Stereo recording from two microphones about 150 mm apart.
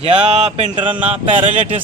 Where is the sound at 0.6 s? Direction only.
35° right (ahead or behind).